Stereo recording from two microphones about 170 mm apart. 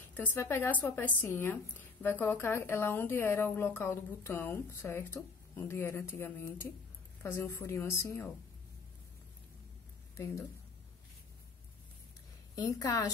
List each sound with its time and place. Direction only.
0.1 s speech: 10° left (ahead or behind)
10.1 s speech: 15° left (ahead or behind)
12.5 s a woman's voice: 20° left (ahead or behind)